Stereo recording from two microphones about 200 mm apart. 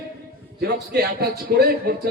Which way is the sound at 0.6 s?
55° right (ahead or behind).